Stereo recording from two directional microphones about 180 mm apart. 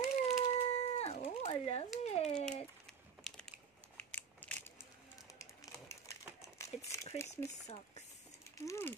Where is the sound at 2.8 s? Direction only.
5° left (ahead or behind).